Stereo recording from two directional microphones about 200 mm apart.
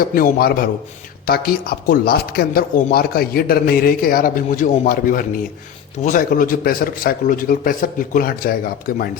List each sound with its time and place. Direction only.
0.0 s speech: 45° left (ahead or behind)